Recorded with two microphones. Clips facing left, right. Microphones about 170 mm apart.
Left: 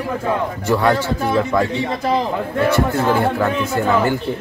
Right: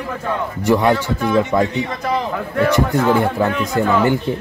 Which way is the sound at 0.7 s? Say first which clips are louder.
Right 2 dB; 15° right (ahead or behind).